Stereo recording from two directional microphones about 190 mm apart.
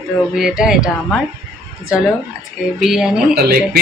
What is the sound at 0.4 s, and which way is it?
Speech, 5° right (ahead or behind).